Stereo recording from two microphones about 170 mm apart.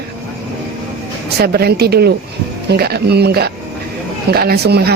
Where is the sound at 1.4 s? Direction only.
65° right (ahead or behind).